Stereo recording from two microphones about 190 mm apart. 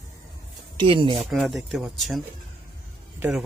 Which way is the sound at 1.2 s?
Centre (ahead or behind).